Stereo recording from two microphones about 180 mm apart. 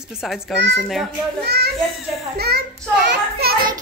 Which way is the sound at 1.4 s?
65° right (ahead or behind).